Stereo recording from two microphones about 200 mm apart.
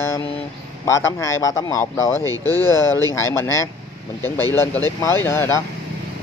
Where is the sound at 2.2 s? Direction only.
15° right (ahead or behind).